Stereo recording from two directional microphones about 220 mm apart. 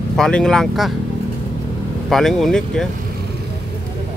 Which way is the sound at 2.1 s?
Centre (ahead or behind).